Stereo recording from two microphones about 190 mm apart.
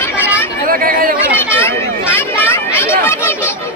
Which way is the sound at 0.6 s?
50° right (ahead or behind).